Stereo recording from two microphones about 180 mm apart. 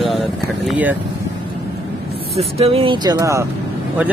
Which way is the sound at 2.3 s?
35° right (ahead or behind).